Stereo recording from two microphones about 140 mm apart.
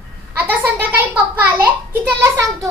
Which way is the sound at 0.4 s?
15° right (ahead or behind).